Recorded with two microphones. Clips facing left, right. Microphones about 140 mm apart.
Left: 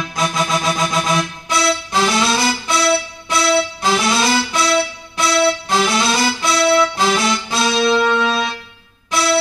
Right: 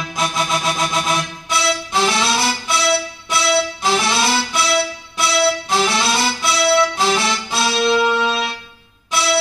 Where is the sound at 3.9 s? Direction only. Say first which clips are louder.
Left 2 dB; centre (ahead or behind).